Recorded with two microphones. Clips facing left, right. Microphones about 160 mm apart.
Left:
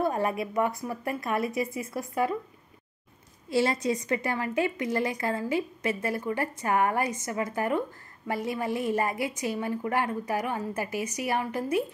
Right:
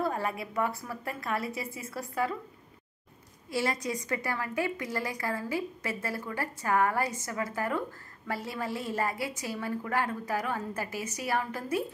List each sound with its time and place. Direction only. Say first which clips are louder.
0.0 s a woman's voice: left 4 dB; 20° left (ahead or behind)
3.4 s a woman's voice: left 6 dB; 25° left (ahead or behind)